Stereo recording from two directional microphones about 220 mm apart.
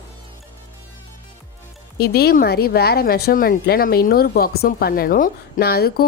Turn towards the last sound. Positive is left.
turn(degrees=45)  # may be behind; listen again after turning